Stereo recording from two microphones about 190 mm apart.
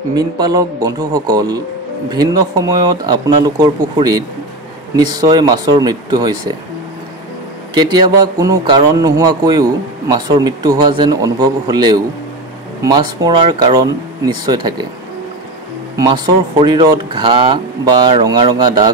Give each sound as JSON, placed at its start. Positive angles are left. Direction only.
{"t": 0.1, "sound": "speech", "side_deg": -20}
{"t": 7.7, "sound": "speech", "side_deg": -20}
{"t": 16.0, "sound": "speech", "side_deg": -25}